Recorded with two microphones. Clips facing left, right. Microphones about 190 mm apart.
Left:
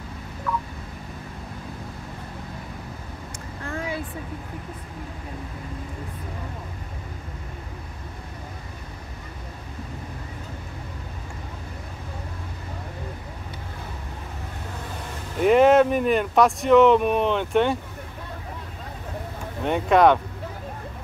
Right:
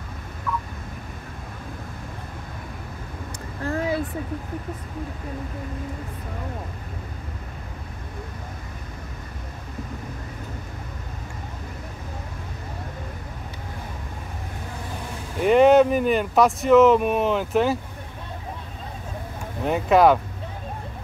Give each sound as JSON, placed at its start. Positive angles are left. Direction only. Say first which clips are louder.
{"t": 3.6, "sound": "a sound", "louder": "right 6 dB", "side_deg": -35}
{"t": 15.4, "sound": "speech", "louder": "right 1 dB", "side_deg": 0}
{"t": 19.6, "sound": "speech", "louder": "right 1 dB", "side_deg": 0}